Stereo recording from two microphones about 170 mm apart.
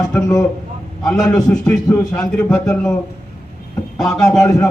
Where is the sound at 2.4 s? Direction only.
5° left (ahead or behind).